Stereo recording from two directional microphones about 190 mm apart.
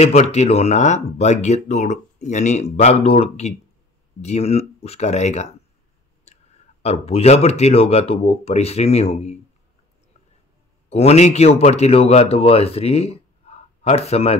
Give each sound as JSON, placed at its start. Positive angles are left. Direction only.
{"t": 0.0, "sound": "speech", "side_deg": 35}
{"t": 6.3, "sound": "clicking", "side_deg": 35}
{"t": 6.8, "sound": "speech", "side_deg": 35}
{"t": 10.9, "sound": "speech", "side_deg": 35}